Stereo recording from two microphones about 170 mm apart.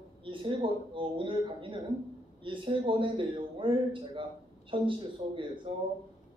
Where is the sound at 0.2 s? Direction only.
30° right (ahead or behind).